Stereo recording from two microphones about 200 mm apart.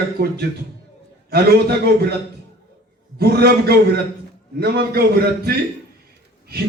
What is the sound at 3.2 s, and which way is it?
A man's voice, 50° right (ahead or behind).